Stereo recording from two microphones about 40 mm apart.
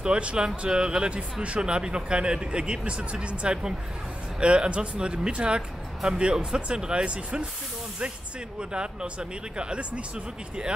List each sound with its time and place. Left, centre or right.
0.0 s speech: right
8.5 s speech: right